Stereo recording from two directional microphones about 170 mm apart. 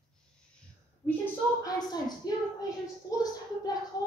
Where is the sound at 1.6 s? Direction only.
25° left (ahead or behind).